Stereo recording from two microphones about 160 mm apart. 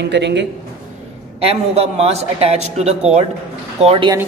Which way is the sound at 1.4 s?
40° right (ahead or behind).